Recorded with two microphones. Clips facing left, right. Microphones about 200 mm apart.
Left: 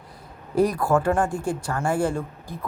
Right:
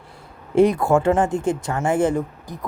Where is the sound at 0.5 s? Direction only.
25° right (ahead or behind).